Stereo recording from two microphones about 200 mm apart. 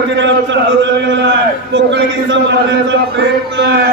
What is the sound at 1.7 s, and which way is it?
Speech, 65° right (ahead or behind).